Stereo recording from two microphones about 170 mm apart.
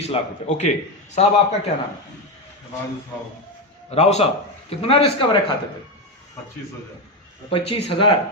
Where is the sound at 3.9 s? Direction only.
40° left (ahead or behind).